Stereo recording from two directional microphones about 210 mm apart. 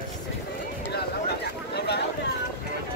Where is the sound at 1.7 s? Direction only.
50° left (ahead or behind).